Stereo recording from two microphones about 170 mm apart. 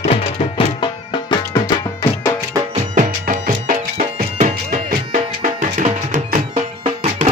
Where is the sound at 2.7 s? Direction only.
45° right (ahead or behind).